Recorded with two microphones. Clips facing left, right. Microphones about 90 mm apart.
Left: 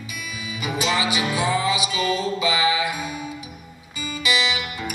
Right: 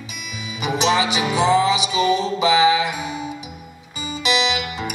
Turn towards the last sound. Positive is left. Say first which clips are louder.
# right 3 dB
turn(degrees=-20)  # may be behind; listen again after turning